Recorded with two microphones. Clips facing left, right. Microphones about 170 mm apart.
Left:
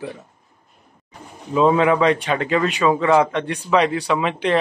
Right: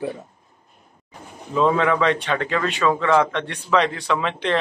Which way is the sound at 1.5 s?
10° left (ahead or behind).